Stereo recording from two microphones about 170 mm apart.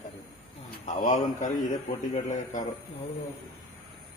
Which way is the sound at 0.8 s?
45° left (ahead or behind).